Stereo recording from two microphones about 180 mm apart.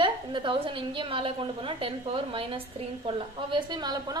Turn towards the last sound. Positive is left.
turn(degrees=-25)  # may be behind; listen again after turning